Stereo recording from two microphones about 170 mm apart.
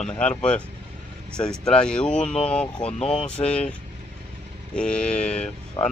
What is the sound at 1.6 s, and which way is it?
Speech, 5° left (ahead or behind).